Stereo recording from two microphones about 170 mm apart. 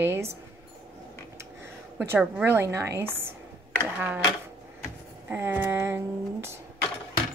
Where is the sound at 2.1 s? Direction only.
10° right (ahead or behind).